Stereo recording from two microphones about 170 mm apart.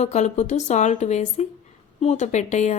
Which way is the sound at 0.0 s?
40° left (ahead or behind).